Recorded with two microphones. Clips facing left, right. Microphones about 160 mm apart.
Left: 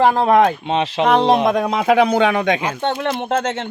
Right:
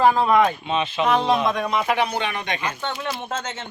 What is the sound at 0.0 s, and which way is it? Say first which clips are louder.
Speech: left 4 dB; 60° left (ahead or behind).